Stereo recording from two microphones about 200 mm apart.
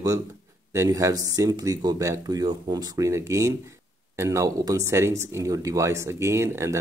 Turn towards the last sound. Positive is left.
turn(degrees=-15)  # may be behind; listen again after turning